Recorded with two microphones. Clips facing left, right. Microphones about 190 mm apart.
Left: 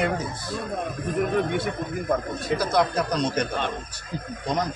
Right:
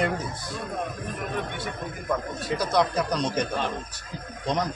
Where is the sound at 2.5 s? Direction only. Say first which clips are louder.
Left 1 dB; 5° left (ahead or behind).